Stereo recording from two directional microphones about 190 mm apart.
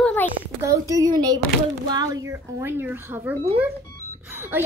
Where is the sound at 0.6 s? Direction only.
15° right (ahead or behind).